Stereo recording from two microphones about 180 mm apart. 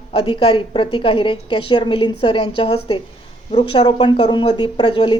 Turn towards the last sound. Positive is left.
turn(degrees=25)  # may be behind; listen again after turning